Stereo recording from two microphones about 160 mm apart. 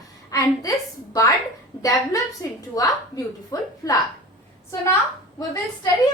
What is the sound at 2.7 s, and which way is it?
Speech, 20° left (ahead or behind).